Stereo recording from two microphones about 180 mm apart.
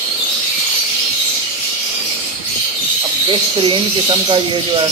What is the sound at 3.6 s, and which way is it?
Speech, 30° right (ahead or behind).